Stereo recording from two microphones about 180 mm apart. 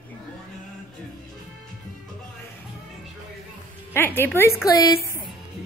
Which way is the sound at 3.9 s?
10° left (ahead or behind).